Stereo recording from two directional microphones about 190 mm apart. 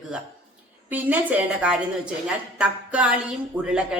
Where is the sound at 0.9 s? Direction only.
10° right (ahead or behind).